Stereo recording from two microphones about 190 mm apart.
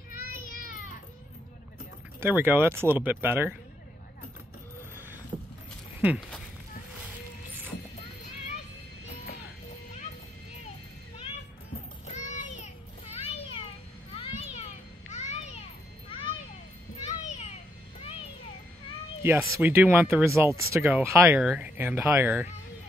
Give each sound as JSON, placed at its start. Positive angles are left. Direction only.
{"t": 2.1, "sound": "speech", "side_deg": -10}
{"t": 5.3, "sound": "vehicle", "side_deg": -20}
{"t": 5.9, "sound": "a sound", "side_deg": -5}
{"t": 12.1, "sound": "child singing", "side_deg": 40}
{"t": 14.1, "sound": "children playing", "side_deg": 30}
{"t": 19.2, "sound": "speech", "side_deg": -10}